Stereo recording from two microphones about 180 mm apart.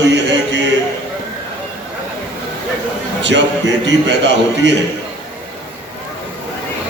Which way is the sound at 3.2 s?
80° right.